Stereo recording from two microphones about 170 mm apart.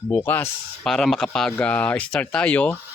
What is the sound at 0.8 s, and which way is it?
Speech, centre (ahead or behind).